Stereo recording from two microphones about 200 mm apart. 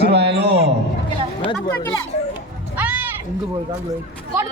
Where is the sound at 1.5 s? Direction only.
20° left (ahead or behind).